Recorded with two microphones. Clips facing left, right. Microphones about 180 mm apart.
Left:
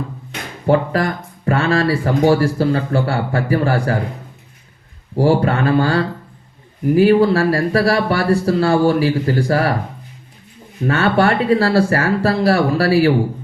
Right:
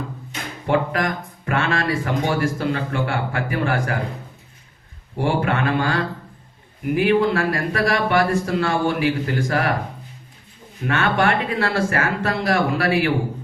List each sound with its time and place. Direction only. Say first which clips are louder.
0.7 s speech: left 5 dB; 35° left (ahead or behind)
5.1 s speech: left 6 dB; 35° left (ahead or behind)
10.8 s speech: left 5 dB; 35° left (ahead or behind)